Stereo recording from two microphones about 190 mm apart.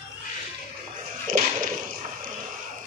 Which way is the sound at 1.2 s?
45° right (ahead or behind).